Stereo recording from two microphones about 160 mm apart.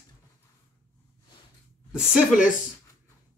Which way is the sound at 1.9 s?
5° right (ahead or behind).